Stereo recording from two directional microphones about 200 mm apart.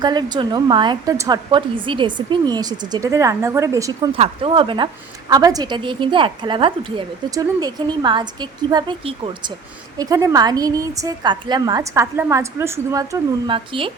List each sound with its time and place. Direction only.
0.0 s a woman's voice: 20° right (ahead or behind)